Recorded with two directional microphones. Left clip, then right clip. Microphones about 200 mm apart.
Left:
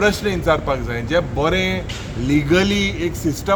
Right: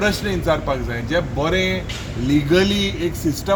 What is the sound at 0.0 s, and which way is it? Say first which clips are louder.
A man's voice: left 3 dB; 30° left (ahead or behind).